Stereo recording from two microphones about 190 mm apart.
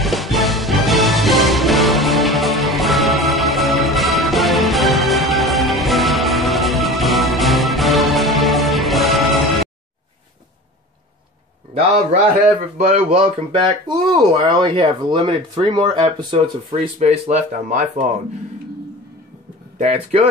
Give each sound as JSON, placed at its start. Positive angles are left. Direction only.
{"t": 0.0, "sound": "music", "side_deg": 0}
{"t": 12.7, "sound": "speech", "side_deg": -40}
{"t": 19.8, "sound": "speech", "side_deg": -40}